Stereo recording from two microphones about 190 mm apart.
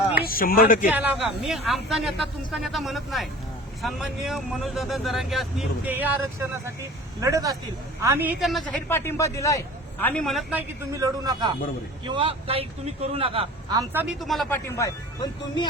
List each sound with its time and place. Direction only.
0.2 s speech: 50° left (ahead or behind)
0.9 s speech: 10° right (ahead or behind)
8.9 s a man's voice: 10° left (ahead or behind)
10.5 s speech: 20° right (ahead or behind)
13.7 s speech: 10° right (ahead or behind)
14.2 s speech: centre (ahead or behind)
14.8 s speech: 20° left (ahead or behind)